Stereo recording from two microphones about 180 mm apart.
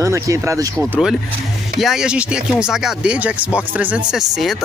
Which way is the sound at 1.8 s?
Centre (ahead or behind).